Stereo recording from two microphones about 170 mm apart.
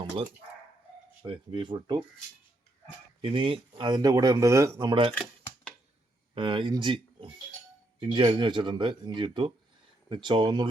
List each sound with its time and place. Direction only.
1.2 s speech: 30° right (ahead or behind)
3.2 s speech: 30° right (ahead or behind)
5.1 s a sound: centre (ahead or behind)
6.3 s speech: 30° right (ahead or behind)